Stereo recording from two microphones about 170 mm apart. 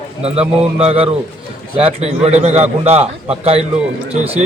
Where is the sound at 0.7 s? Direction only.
35° right (ahead or behind).